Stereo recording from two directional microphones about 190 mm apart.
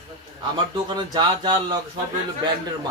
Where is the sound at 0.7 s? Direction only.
25° right (ahead or behind).